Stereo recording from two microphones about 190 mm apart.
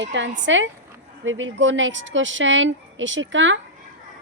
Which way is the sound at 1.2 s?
90° right.